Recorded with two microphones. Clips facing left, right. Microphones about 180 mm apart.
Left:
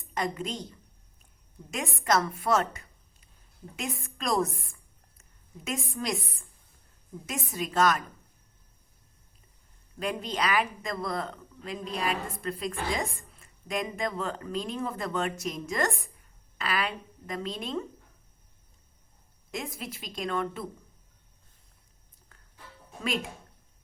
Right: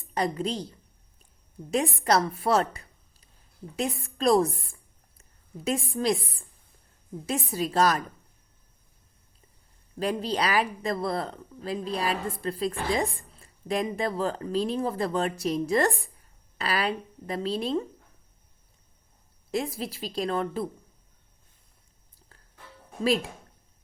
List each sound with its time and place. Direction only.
0.0 s a woman's voice: 35° right (ahead or behind)
1.7 s a woman's voice: 35° right (ahead or behind)
10.0 s speech: 35° right (ahead or behind)
19.5 s speech: 35° right (ahead or behind)